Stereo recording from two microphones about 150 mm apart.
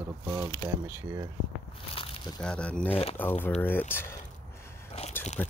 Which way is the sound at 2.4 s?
5° left (ahead or behind).